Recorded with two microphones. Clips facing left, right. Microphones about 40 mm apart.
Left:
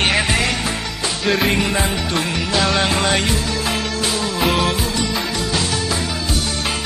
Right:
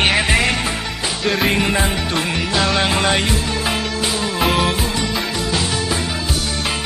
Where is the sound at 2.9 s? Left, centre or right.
Centre.